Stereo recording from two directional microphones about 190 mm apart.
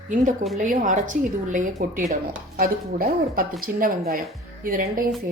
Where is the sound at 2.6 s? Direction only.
50° right (ahead or behind).